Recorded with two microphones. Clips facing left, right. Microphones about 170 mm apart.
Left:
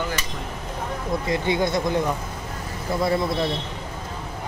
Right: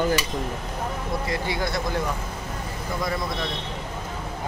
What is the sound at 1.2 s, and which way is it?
Speech, 20° left (ahead or behind).